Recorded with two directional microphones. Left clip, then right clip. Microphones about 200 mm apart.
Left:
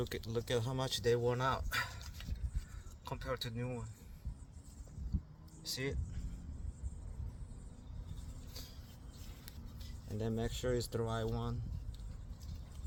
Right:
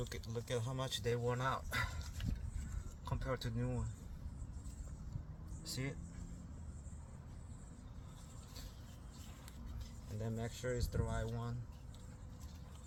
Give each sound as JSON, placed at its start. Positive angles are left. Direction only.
{"t": 0.1, "sound": "speech", "side_deg": 45}
{"t": 3.0, "sound": "speech", "side_deg": 35}
{"t": 5.6, "sound": "speech", "side_deg": 35}
{"t": 10.2, "sound": "speech", "side_deg": 45}